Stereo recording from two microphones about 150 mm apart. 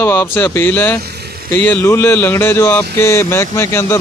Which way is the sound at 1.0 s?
90° right.